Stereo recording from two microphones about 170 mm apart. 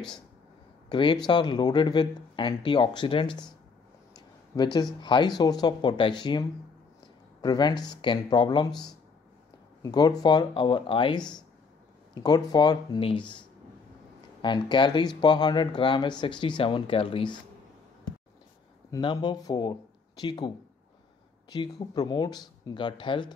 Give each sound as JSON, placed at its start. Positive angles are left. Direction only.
{"t": 0.8, "sound": "speech", "side_deg": 25}
{"t": 4.5, "sound": "speech", "side_deg": 20}
{"t": 7.4, "sound": "speech", "side_deg": 25}
{"t": 14.4, "sound": "speech", "side_deg": 25}
{"t": 18.9, "sound": "speech", "side_deg": 25}